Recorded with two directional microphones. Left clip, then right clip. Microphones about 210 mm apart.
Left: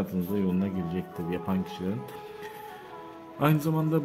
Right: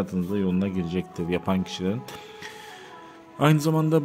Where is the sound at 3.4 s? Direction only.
25° right (ahead or behind).